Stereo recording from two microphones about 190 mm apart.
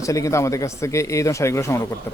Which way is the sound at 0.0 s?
15° left (ahead or behind).